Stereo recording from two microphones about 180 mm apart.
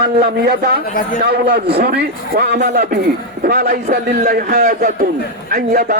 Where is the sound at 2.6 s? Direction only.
45° right (ahead or behind).